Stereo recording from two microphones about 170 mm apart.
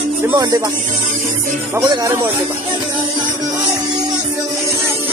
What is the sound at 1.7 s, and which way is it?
Speech, 20° right (ahead or behind).